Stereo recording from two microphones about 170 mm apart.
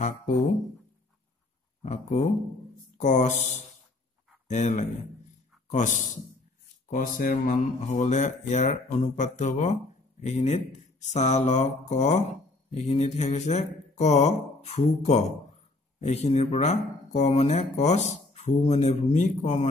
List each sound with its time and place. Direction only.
1.8 s speech: 40° left (ahead or behind)
4.5 s a man's voice: 45° left (ahead or behind)